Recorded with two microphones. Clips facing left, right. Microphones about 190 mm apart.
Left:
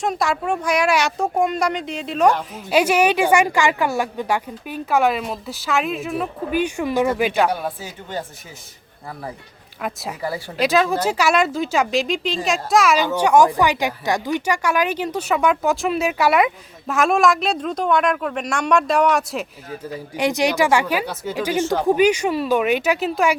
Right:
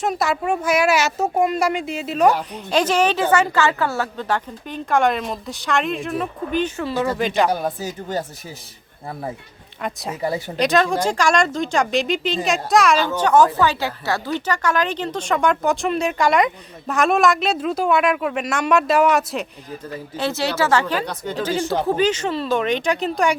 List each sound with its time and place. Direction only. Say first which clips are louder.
0.0 s speech: even; centre (ahead or behind)
2.6 s speech: left 2 dB; 10° left (ahead or behind)
7.5 s speech: right 3 dB; 40° right (ahead or behind)
9.8 s speech: even; centre (ahead or behind)
10.2 s a woman's voice: right 4 dB; 20° right (ahead or behind)
10.6 s speech: even; 5° left (ahead or behind)
20.1 s speech: left 3 dB; 15° left (ahead or behind)